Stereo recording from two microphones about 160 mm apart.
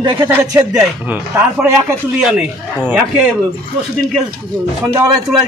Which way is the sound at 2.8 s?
10° right (ahead or behind).